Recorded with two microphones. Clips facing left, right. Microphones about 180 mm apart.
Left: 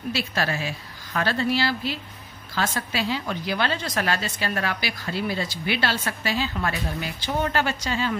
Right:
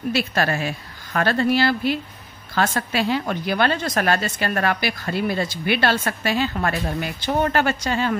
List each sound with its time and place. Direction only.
0.1 s a woman's voice: 55° right (ahead or behind)